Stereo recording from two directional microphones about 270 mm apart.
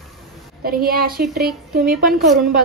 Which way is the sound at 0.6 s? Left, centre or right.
Right.